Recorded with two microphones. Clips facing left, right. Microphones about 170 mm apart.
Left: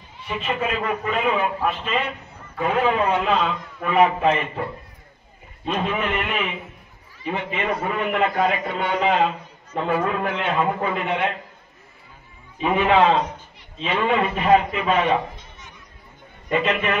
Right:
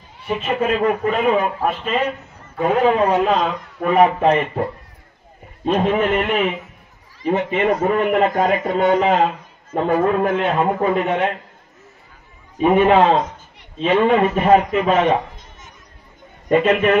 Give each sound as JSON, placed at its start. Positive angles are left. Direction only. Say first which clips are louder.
{"t": 0.3, "sound": "a man's voice", "louder": "right 6 dB", "side_deg": -45}
{"t": 5.7, "sound": "a man's voice", "louder": "right 7 dB", "side_deg": -45}
{"t": 12.5, "sound": "a man's voice", "louder": "right 5 dB", "side_deg": -45}